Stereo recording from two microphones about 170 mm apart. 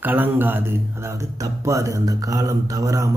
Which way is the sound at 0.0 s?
10° right (ahead or behind).